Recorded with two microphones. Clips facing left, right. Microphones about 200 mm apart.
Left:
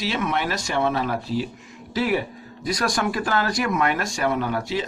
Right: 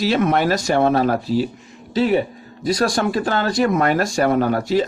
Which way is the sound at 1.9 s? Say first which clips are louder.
Right 6 dB; 25° right (ahead or behind).